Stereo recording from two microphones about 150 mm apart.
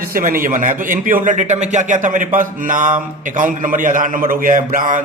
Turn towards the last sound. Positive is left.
turn(degrees=-65)  # may be behind; listen again after turning